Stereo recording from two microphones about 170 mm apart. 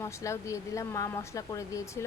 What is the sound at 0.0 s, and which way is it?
A woman's voice, 15° left (ahead or behind).